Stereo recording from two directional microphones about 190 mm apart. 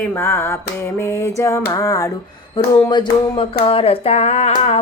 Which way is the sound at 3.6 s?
30° left (ahead or behind).